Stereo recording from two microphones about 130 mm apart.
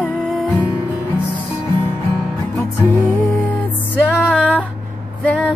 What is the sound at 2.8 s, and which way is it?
Music, 10° left (ahead or behind).